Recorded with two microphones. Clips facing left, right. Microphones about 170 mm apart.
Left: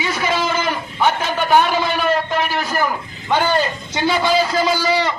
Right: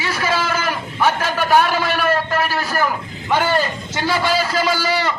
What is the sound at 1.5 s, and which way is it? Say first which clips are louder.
Speech: left 1 dB; 20° left (ahead or behind).